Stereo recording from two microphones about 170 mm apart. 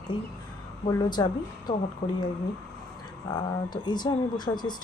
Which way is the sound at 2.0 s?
40° left (ahead or behind).